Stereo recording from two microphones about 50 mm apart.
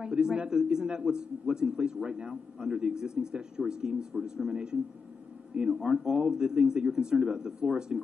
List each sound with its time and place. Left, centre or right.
0.0 s a man's voice: centre